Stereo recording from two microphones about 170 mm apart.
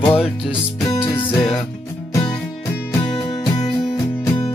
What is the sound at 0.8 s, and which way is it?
Music, 20° left (ahead or behind).